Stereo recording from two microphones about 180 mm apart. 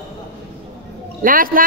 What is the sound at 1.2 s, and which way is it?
Speech, 50° right (ahead or behind).